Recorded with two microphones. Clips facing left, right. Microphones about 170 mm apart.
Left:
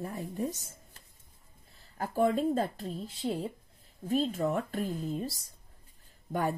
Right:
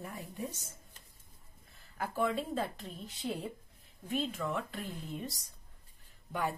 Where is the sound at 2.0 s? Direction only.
40° left (ahead or behind).